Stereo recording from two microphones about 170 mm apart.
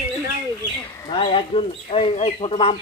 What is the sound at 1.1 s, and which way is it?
Speech, 30° left (ahead or behind).